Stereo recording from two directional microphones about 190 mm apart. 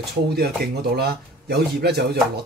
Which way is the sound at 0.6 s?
55° right (ahead or behind).